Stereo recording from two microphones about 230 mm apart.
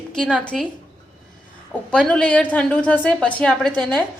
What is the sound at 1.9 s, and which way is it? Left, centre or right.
A woman's voice, centre.